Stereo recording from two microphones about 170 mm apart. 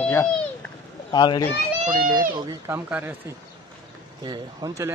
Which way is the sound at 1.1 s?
25° left (ahead or behind).